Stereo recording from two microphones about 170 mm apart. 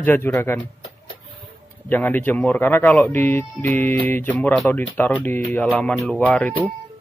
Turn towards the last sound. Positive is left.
turn(degrees=10)  # may be behind; listen again after turning